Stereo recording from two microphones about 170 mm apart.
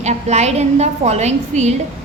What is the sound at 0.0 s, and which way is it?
A woman's voice, 40° right (ahead or behind).